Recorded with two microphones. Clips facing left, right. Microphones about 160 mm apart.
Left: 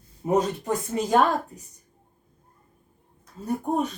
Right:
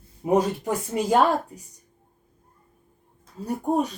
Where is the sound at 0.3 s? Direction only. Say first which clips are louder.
Right 1 dB; 10° right (ahead or behind).